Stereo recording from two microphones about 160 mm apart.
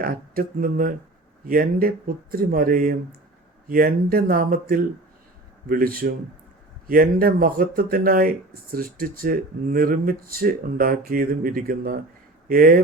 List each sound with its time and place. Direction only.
0.0 s speech: 60° right (ahead or behind)